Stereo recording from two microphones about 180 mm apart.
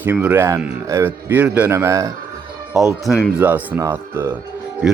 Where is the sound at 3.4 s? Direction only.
10° right (ahead or behind).